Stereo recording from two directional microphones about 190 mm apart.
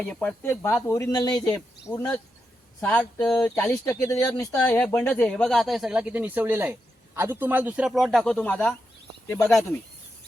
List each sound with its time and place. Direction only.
0.1 s speech: 5° left (ahead or behind)
2.8 s speech: 5° left (ahead or behind)
3.5 s speech: 15° left (ahead or behind)